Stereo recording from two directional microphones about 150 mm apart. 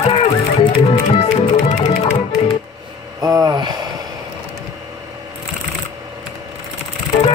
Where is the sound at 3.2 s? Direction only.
25° right (ahead or behind).